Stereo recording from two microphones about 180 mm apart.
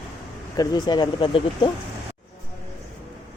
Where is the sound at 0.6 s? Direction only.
20° left (ahead or behind).